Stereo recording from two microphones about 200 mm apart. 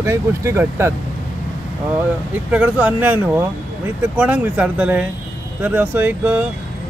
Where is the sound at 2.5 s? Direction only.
5° right (ahead or behind).